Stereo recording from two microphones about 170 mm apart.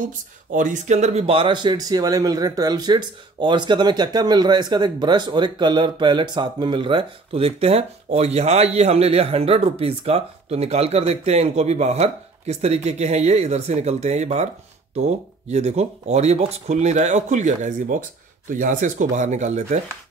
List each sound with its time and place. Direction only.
0.5 s speech: 50° right (ahead or behind)